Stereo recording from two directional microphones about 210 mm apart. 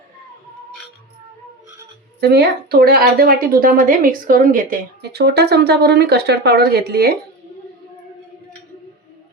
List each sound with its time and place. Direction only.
2.2 s a woman's voice: 50° right (ahead or behind)